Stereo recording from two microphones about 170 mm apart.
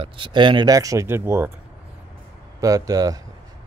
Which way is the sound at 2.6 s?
20° right (ahead or behind).